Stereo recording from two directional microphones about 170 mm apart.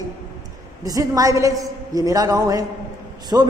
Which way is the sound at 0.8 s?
20° right (ahead or behind).